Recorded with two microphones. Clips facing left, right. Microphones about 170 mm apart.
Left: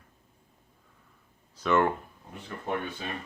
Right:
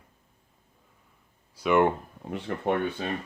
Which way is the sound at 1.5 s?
15° right (ahead or behind).